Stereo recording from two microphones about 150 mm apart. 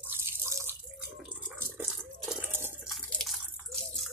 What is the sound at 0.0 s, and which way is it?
Water, 15° right (ahead or behind).